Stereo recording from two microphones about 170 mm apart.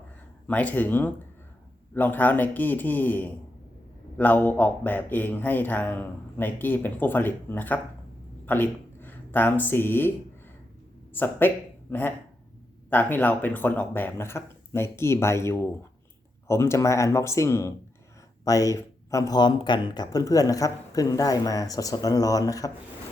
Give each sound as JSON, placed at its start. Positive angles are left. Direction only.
{"t": 0.4, "sound": "a man's voice", "side_deg": 10}
{"t": 11.2, "sound": "a man's voice", "side_deg": 10}